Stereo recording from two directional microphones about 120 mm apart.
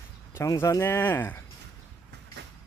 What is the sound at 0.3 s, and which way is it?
Speech, 25° left (ahead or behind).